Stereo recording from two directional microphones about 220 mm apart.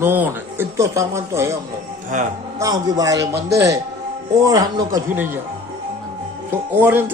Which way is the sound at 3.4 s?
50° right (ahead or behind).